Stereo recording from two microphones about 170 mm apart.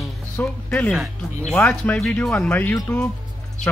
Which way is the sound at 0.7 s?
5° left (ahead or behind).